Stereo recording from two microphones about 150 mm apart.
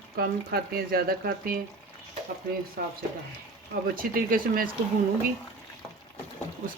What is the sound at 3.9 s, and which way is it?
Speech, 70° right (ahead or behind).